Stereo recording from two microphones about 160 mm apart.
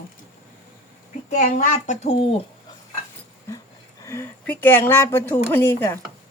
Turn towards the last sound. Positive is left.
turn(degrees=15)  # may be behind; listen again after turning